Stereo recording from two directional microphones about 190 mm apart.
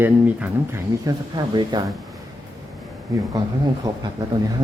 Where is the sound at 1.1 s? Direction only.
20° right (ahead or behind).